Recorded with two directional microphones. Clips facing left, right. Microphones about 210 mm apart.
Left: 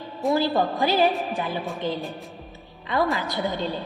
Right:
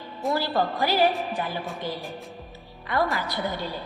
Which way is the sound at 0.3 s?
20° left (ahead or behind).